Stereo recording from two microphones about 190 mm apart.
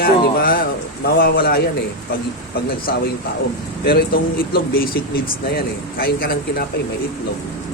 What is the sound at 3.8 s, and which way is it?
Speech, 55° left (ahead or behind).